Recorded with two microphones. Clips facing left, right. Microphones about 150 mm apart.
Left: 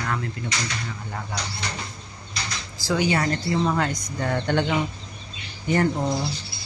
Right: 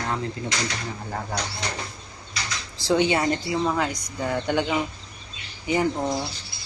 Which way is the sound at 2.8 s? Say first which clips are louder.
Right 2 dB; 25° right (ahead or behind).